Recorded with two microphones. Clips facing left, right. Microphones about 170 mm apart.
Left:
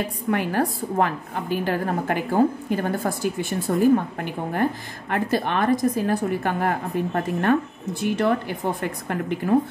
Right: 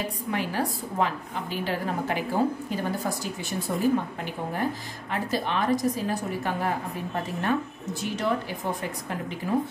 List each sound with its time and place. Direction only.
0.3 s a woman's voice: 55° left (ahead or behind)